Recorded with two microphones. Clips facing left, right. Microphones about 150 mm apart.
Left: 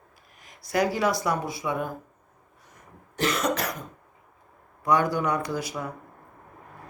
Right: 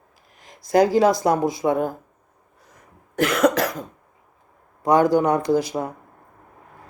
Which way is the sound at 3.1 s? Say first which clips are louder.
Right 7 dB; 55° right (ahead or behind).